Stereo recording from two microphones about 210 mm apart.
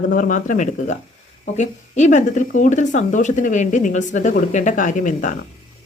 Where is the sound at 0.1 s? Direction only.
40° left (ahead or behind).